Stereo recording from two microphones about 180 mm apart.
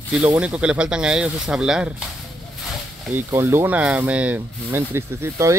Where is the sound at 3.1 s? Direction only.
15° right (ahead or behind).